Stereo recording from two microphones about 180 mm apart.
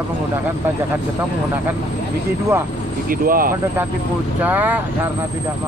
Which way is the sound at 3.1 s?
50° right (ahead or behind).